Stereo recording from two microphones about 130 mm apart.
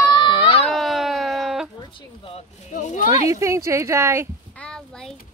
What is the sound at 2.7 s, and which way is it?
Speech, 75° left (ahead or behind).